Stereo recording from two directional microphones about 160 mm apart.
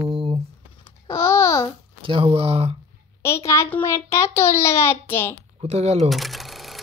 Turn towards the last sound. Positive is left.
turn(degrees=0)  # may be behind; listen again after turning